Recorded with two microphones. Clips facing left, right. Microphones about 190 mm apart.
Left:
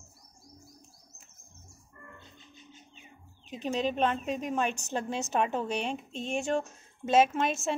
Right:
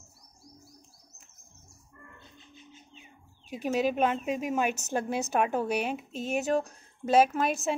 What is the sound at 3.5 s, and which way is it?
Speech, 10° right (ahead or behind).